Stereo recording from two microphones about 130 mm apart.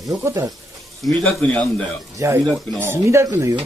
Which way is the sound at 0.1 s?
25° right (ahead or behind).